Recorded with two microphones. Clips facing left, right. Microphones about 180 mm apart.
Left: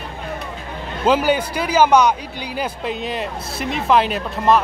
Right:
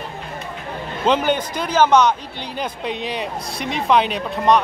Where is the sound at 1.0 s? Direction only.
5° left (ahead or behind).